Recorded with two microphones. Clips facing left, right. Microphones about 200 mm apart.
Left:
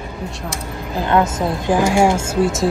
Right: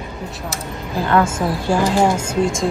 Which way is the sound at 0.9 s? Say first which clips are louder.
Even; 20° left (ahead or behind).